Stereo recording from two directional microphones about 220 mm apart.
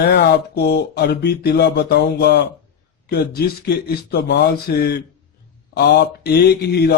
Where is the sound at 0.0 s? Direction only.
45° left (ahead or behind).